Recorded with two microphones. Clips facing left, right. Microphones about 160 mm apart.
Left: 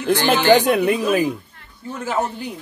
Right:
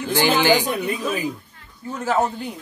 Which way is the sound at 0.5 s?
70° left (ahead or behind).